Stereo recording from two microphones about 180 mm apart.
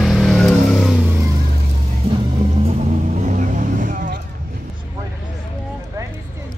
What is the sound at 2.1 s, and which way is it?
Music, 35° right (ahead or behind).